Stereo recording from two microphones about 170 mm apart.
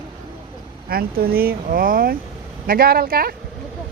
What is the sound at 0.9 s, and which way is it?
Speech, 60° right (ahead or behind).